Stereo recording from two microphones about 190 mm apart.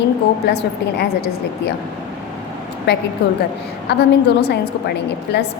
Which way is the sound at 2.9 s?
60° left (ahead or behind).